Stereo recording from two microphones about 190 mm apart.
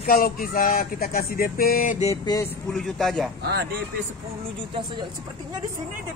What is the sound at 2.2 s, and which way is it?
Speech, 20° left (ahead or behind).